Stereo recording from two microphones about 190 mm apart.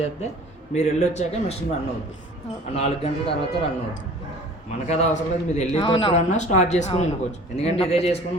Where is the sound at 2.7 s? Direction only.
35° left (ahead or behind).